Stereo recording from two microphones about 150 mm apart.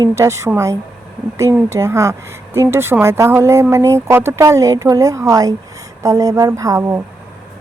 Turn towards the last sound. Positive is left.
turn(degrees=-20)  # may be behind; listen again after turning